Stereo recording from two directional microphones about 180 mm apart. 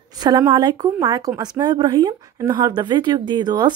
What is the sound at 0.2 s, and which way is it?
A woman's voice, 25° right (ahead or behind).